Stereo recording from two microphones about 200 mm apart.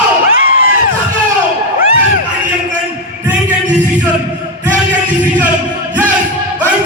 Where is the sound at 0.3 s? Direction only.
45° left (ahead or behind).